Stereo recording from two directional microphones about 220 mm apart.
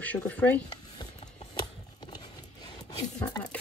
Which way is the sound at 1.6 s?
20° left (ahead or behind).